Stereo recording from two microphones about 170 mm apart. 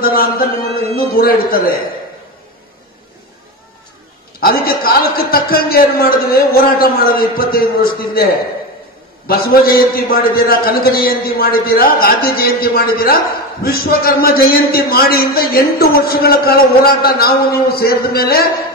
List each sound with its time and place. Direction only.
0.0 s a sound: 60° left (ahead or behind)
0.9 s a man's voice: 60° left (ahead or behind)
4.4 s a man's voice: 60° left (ahead or behind)
9.3 s a man's voice: 60° left (ahead or behind)